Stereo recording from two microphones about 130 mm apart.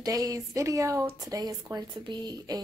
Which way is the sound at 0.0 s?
25° right (ahead or behind).